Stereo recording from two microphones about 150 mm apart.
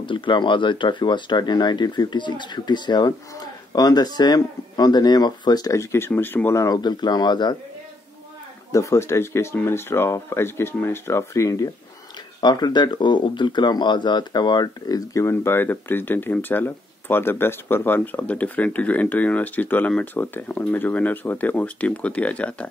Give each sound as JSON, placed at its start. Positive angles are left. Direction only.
{"t": 0.0, "sound": "speech", "side_deg": 35}
{"t": 8.7, "sound": "speech", "side_deg": 20}